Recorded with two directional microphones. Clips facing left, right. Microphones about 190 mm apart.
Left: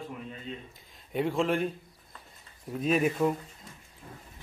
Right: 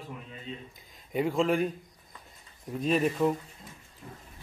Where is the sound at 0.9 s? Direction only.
Centre (ahead or behind).